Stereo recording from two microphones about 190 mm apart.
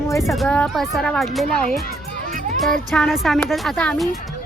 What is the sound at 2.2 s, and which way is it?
Music, 45° right (ahead or behind).